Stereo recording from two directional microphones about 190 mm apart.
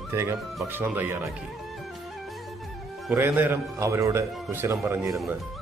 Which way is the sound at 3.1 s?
10° right (ahead or behind).